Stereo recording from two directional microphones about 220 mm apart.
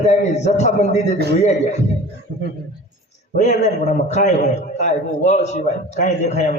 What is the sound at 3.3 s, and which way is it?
A man's voice, 30° left (ahead or behind).